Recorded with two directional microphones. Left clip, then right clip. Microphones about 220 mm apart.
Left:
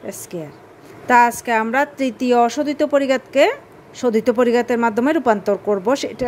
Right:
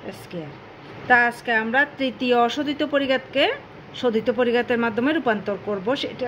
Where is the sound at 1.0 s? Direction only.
40° left (ahead or behind).